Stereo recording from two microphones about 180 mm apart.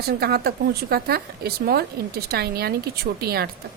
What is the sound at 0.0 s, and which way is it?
Speech, 60° right (ahead or behind).